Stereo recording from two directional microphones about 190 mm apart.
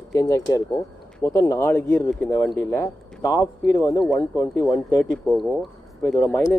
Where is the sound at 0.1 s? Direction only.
20° left (ahead or behind).